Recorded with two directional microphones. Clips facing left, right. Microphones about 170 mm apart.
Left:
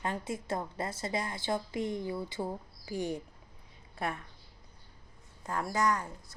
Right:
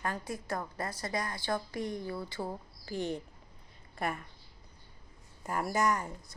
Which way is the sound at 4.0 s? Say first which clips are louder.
Right 1 dB; centre (ahead or behind).